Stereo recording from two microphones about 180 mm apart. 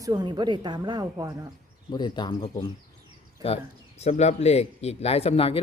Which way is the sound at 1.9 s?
25° left (ahead or behind).